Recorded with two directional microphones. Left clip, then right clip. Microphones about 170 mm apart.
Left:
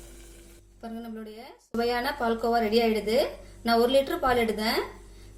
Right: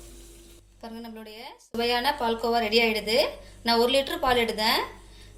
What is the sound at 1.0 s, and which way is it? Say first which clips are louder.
A woman's voice: even; 50° left (ahead or behind).